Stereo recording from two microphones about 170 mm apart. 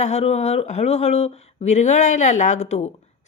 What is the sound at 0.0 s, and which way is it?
Speech, 40° left (ahead or behind).